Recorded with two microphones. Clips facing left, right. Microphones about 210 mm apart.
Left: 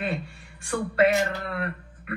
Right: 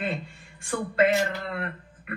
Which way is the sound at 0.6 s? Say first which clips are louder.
Left 1 dB; 20° right (ahead or behind).